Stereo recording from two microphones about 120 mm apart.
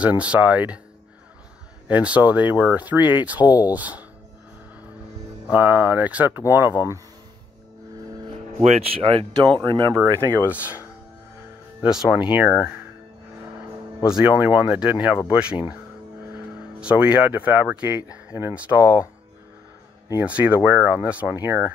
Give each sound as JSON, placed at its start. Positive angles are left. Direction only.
{"t": 0.0, "sound": "speech", "side_deg": -10}
{"t": 1.9, "sound": "speech", "side_deg": -10}
{"t": 5.5, "sound": "speech", "side_deg": -15}
{"t": 8.6, "sound": "speech", "side_deg": -60}
{"t": 9.3, "sound": "speech", "side_deg": -40}
{"t": 9.9, "sound": "speech", "side_deg": -20}
{"t": 12.1, "sound": "speech", "side_deg": -10}
{"t": 14.0, "sound": "speech", "side_deg": -10}
{"t": 16.8, "sound": "speech", "side_deg": -10}
{"t": 20.2, "sound": "speech", "side_deg": -15}